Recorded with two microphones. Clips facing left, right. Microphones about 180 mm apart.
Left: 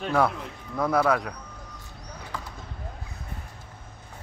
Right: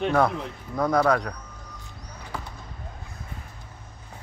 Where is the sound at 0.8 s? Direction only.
5° left (ahead or behind).